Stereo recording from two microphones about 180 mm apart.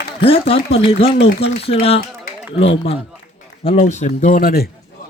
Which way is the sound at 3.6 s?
40° left (ahead or behind).